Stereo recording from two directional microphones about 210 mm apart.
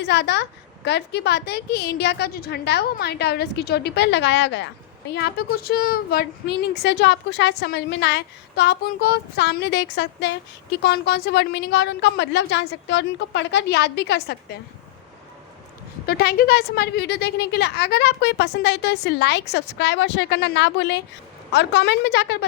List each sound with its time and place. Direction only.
0.0 s a woman's voice: 55° left (ahead or behind)
16.0 s a woman's voice: 45° left (ahead or behind)